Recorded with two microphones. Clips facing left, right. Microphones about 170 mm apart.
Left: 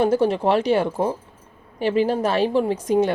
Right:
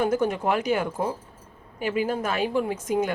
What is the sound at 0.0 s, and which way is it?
A woman's voice, 30° left (ahead or behind).